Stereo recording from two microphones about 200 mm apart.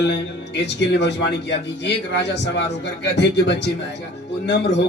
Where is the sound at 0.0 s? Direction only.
60° left (ahead or behind).